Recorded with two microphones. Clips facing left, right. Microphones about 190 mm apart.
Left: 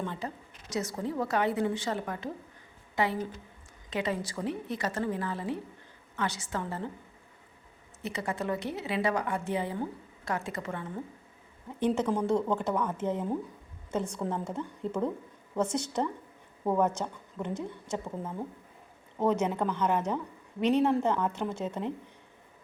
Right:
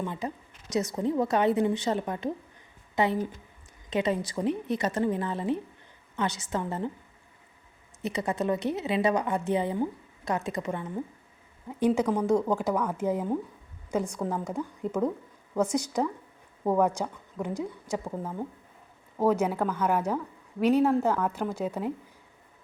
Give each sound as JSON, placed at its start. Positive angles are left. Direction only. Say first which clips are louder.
{"t": 0.0, "sound": "a woman's voice", "louder": "right 3 dB", "side_deg": -15}
{"t": 8.0, "sound": "a woman's voice", "louder": "right 5 dB", "side_deg": -20}